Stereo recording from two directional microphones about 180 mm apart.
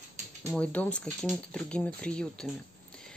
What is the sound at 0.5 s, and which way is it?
Speech, 5° left (ahead or behind).